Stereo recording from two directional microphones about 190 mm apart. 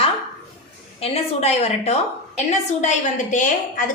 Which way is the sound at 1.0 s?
35° left (ahead or behind).